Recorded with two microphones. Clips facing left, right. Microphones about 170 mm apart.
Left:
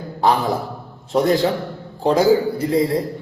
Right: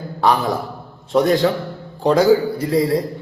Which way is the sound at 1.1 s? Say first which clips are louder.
Right 1 dB; 25° left (ahead or behind).